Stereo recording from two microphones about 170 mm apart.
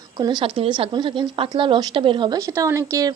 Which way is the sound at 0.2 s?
25° right (ahead or behind).